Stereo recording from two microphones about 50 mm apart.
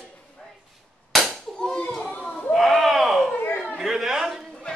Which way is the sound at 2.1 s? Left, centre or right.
Left.